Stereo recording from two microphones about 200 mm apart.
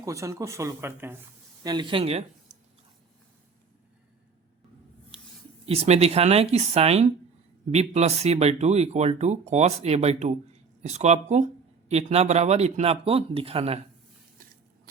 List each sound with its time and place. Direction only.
0.0 s speech: 15° right (ahead or behind)
1.6 s speech: 20° right (ahead or behind)
5.6 s speech: 30° right (ahead or behind)